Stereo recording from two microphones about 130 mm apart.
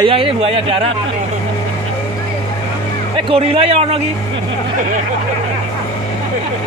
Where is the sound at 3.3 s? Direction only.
45° right (ahead or behind).